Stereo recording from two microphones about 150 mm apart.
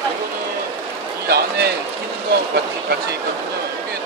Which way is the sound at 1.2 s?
90° right.